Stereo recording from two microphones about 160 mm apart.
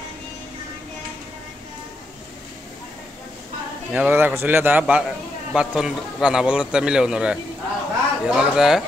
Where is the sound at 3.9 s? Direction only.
10° right (ahead or behind).